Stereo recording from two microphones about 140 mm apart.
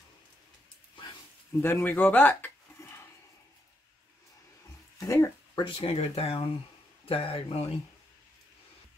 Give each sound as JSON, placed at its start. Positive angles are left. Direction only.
{"t": 1.6, "sound": "speech", "side_deg": 15}
{"t": 4.9, "sound": "dog", "side_deg": 20}
{"t": 5.6, "sound": "speech", "side_deg": 40}